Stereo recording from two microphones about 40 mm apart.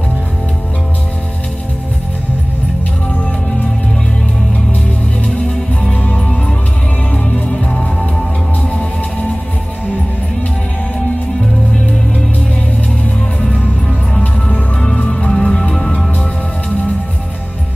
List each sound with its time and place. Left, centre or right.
6.1 s music: centre
7.6 s music: left
14.8 s music: centre